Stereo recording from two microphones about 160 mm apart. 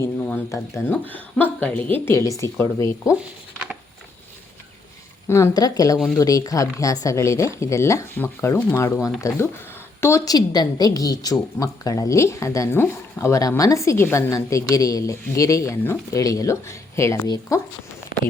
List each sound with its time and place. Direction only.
0.0 s speech: 15° left (ahead or behind)
3.2 s a sound: 5° right (ahead or behind)
5.3 s a woman's voice: 20° left (ahead or behind)